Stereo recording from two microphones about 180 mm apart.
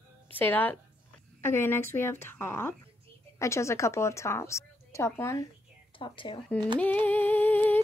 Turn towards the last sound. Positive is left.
turn(degrees=10)  # may be behind; listen again after turning